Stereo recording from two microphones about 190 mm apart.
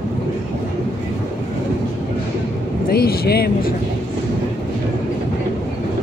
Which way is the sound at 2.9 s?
55° left (ahead or behind).